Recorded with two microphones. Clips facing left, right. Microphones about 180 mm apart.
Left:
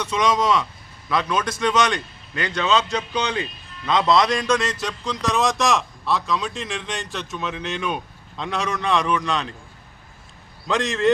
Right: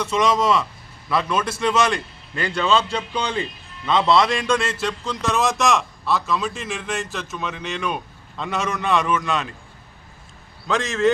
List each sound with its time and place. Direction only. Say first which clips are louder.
0.0 s a man's voice: right 1 dB; 5° right (ahead or behind)
2.3 s a man's voice: right 1 dB; 30° right (ahead or behind)
4.0 s a man's voice: even; 5° right (ahead or behind)
10.7 s a man's voice: right 1 dB; centre (ahead or behind)